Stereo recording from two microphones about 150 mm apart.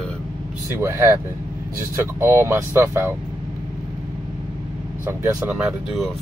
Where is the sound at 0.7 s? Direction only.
20° right (ahead or behind).